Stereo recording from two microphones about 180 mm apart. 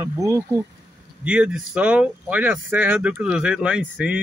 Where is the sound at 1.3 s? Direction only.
5° right (ahead or behind).